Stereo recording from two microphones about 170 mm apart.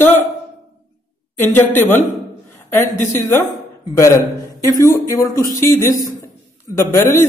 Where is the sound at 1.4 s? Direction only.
10° left (ahead or behind).